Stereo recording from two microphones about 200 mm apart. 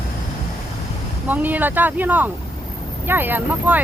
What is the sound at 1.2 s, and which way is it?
Speech, 10° right (ahead or behind).